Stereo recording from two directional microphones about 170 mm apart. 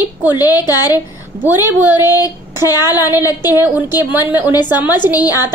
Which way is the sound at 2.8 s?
10° right (ahead or behind).